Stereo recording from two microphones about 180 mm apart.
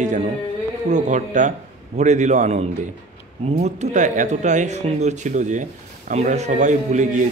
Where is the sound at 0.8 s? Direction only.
40° right (ahead or behind).